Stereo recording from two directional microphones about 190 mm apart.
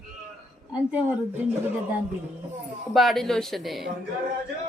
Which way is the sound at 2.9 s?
Centre (ahead or behind).